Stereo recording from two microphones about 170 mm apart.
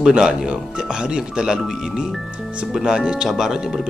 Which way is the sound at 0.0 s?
5° right (ahead or behind).